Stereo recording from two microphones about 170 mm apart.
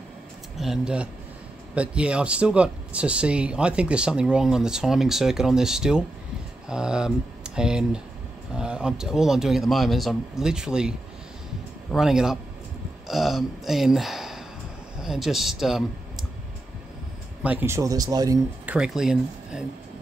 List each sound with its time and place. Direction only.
0.6 s speech: 5° right (ahead or behind)
17.4 s speech: 10° right (ahead or behind)
18.7 s speech: 5° right (ahead or behind)